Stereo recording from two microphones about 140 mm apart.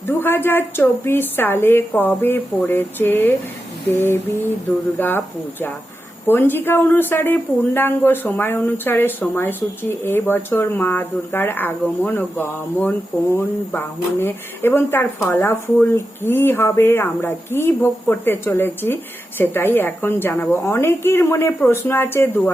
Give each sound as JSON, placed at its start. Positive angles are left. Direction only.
{"t": 0.1, "sound": "speech", "side_deg": 15}